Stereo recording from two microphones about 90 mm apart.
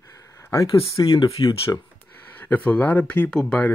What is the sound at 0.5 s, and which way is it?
Speech, 35° left (ahead or behind).